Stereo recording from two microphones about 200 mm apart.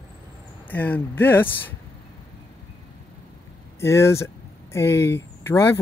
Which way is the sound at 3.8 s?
15° left (ahead or behind).